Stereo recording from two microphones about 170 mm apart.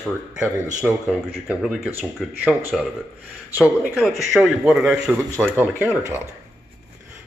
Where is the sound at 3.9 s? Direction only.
Centre (ahead or behind).